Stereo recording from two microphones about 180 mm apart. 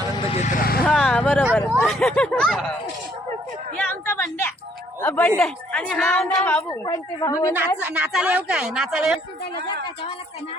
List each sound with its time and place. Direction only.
0.3 s vehicle: 40° left (ahead or behind)
0.9 s vehicle: 5° left (ahead or behind)
1.8 s a woman's voice: centre (ahead or behind)
3.8 s a sound: 15° left (ahead or behind)
4.9 s a woman's voice: 10° left (ahead or behind)
6.8 s a woman's voice: 20° left (ahead or behind)
7.8 s a woman's voice: 10° right (ahead or behind)